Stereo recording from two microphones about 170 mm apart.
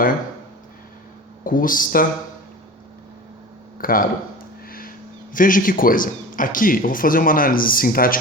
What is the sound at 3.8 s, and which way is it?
Speech, 55° left (ahead or behind).